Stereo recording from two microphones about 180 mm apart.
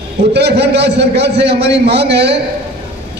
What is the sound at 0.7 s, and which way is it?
A man's voice, 70° right (ahead or behind).